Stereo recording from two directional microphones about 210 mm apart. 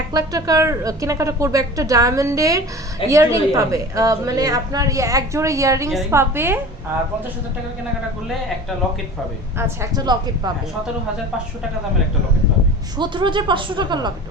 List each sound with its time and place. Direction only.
0.1 s a woman's voice: 15° right (ahead or behind)
9.6 s speech: 15° right (ahead or behind)
13.0 s speech: 20° right (ahead or behind)